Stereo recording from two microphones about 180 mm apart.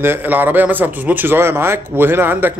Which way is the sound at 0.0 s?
10° right (ahead or behind).